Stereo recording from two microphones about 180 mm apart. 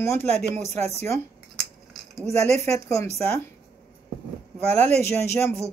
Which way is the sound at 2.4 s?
40° right (ahead or behind).